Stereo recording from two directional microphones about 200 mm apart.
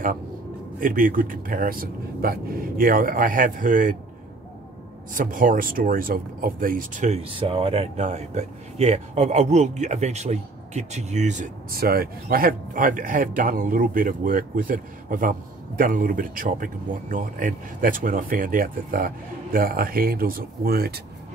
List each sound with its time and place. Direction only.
0.7 s speech: 45° right (ahead or behind)
5.1 s speech: 45° right (ahead or behind)